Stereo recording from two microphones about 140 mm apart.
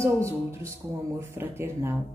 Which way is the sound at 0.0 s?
20° right (ahead or behind).